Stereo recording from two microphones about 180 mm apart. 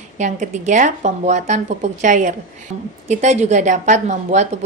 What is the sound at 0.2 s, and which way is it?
Speech, 40° right (ahead or behind).